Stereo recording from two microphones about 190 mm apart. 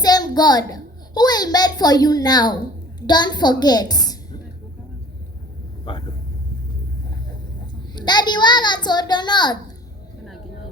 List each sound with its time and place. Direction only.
0.0 s a child's voice: 20° left (ahead or behind)
5.9 s vehicle: 25° left (ahead or behind)
7.9 s a child's voice: 20° left (ahead or behind)